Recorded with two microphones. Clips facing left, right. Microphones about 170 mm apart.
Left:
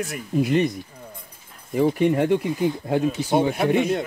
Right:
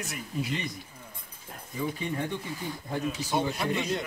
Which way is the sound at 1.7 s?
70° left (ahead or behind).